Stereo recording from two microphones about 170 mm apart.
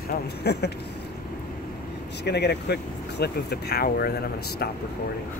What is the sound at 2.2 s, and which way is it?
Speech, 80° left.